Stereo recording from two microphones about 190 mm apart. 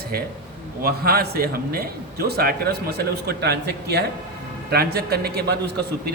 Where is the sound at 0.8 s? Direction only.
50° right (ahead or behind).